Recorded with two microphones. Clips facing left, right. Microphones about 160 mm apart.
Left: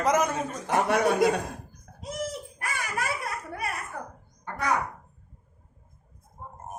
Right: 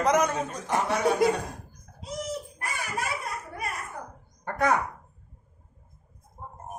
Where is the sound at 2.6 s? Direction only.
65° left (ahead or behind).